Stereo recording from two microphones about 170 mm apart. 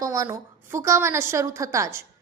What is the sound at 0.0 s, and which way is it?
A woman's voice, 20° right (ahead or behind).